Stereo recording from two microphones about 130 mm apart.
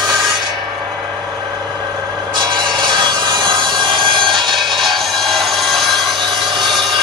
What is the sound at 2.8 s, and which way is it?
Sawing, 35° right (ahead or behind).